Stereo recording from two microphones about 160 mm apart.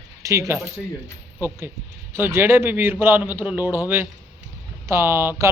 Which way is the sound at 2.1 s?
15° right (ahead or behind).